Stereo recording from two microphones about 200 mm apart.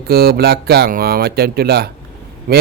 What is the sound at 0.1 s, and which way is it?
A man's voice, 50° right (ahead or behind).